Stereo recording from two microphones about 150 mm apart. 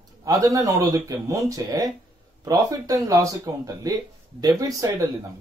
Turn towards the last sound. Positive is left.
turn(degrees=-25)  # may be behind; listen again after turning